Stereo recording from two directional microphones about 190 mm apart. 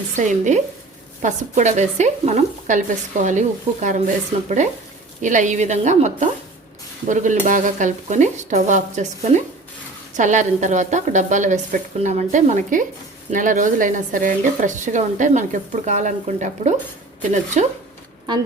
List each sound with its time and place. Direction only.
0.2 s speech: 40° right (ahead or behind)